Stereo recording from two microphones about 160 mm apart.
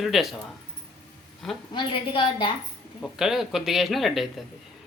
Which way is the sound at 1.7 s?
30° left (ahead or behind).